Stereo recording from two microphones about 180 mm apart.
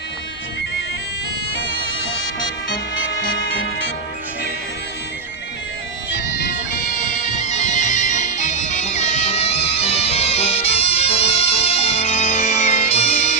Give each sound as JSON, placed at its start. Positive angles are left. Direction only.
{"t": 2.4, "sound": "music", "side_deg": 90}
{"t": 7.1, "sound": "music", "side_deg": 40}